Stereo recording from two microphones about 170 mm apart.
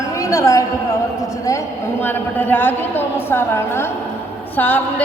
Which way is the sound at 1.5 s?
15° left (ahead or behind).